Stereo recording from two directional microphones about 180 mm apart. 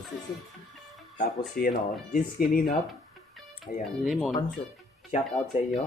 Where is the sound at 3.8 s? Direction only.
Centre (ahead or behind).